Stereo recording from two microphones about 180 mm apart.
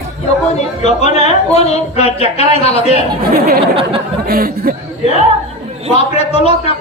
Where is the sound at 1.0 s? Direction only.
35° left (ahead or behind).